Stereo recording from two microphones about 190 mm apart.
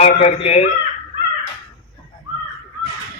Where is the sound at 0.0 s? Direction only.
35° left (ahead or behind).